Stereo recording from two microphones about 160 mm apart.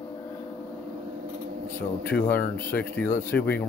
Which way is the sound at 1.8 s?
10° left (ahead or behind).